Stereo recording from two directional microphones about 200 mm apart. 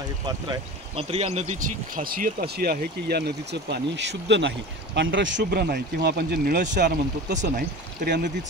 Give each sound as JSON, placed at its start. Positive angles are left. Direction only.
{"t": 0.5, "sound": "speech", "side_deg": -30}